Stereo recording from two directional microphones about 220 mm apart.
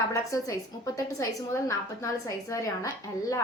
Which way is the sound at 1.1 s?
15° left (ahead or behind).